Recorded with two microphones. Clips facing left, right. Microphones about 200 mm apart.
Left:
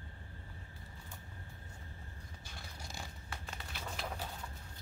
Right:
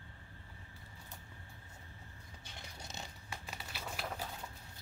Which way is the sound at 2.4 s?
20° right (ahead or behind).